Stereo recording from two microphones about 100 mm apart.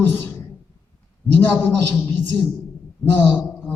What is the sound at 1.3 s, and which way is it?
Speech, 20° left (ahead or behind).